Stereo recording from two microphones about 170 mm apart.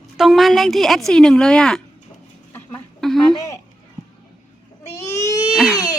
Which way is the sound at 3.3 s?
20° left (ahead or behind).